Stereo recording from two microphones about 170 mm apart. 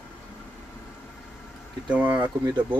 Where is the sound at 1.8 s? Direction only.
10° right (ahead or behind).